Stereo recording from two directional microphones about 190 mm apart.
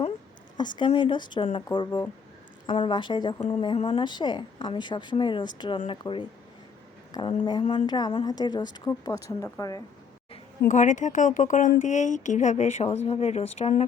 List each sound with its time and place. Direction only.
0.5 s a woman's voice: 25° left (ahead or behind)
10.6 s speech: 40° left (ahead or behind)